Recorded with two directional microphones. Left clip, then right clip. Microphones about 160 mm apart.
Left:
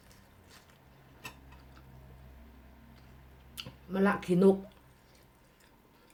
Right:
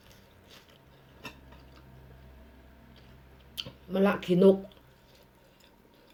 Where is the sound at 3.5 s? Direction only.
15° left (ahead or behind).